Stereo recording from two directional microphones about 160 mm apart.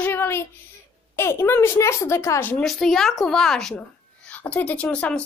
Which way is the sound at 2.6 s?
Centre (ahead or behind).